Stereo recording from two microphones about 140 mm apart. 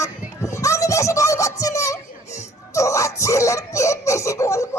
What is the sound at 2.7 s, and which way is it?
Laughter, 20° left (ahead or behind).